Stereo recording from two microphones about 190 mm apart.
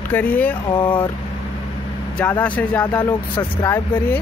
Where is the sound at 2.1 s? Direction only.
10° left (ahead or behind).